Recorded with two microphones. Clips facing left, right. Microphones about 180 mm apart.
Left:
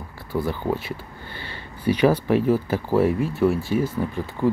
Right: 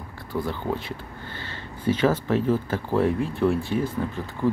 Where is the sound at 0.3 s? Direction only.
10° left (ahead or behind).